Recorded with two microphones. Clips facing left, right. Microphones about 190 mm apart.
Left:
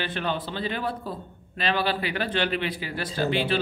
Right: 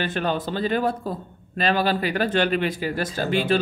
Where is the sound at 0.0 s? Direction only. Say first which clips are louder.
Right 4 dB; 45° right (ahead or behind).